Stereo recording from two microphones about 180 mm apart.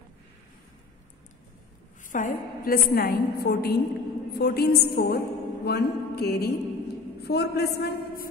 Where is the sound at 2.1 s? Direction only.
50° left (ahead or behind).